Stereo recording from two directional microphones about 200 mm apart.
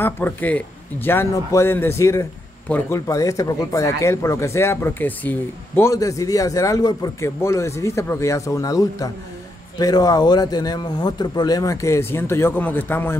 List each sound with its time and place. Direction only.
0.0 s a man's voice: 10° left (ahead or behind)